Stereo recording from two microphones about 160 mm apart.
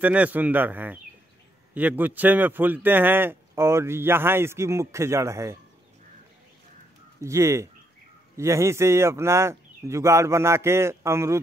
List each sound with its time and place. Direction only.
0.0 s a man's voice: 10° right (ahead or behind)
7.2 s a man's voice: 20° right (ahead or behind)